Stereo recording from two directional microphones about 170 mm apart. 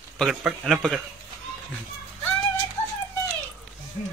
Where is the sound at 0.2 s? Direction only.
Centre (ahead or behind).